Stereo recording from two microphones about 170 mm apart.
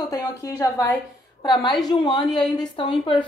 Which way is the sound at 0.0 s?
20° left (ahead or behind).